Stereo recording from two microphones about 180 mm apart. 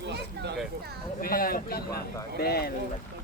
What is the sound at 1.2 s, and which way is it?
Speech, 55° left (ahead or behind).